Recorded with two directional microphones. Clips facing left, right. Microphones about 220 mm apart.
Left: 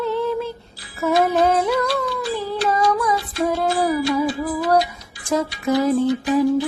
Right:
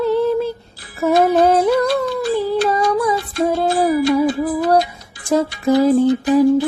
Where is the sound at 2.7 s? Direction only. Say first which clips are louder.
Right 3 dB; 30° right (ahead or behind).